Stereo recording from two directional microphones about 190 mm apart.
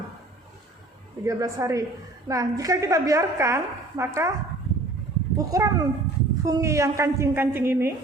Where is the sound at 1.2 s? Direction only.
15° right (ahead or behind).